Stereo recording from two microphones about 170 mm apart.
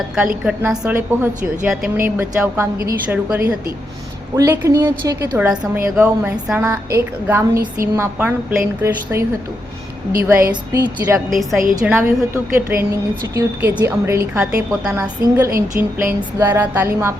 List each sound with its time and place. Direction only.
0.4 s a woman's voice: 10° right (ahead or behind)
5.4 s a woman's voice: 10° right (ahead or behind)
10.2 s a woman's voice: 15° right (ahead or behind)
11.7 s a woman's voice: 10° right (ahead or behind)